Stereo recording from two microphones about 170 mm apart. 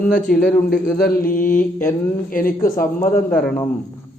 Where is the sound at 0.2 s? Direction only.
55° left (ahead or behind).